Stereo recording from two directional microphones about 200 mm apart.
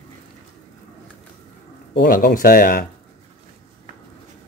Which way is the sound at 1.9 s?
45° left (ahead or behind).